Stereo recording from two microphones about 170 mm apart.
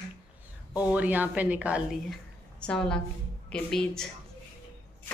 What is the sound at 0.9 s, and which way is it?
A woman's voice, 10° right (ahead or behind).